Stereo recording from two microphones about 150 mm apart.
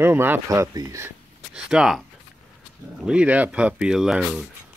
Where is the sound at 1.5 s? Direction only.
5° right (ahead or behind).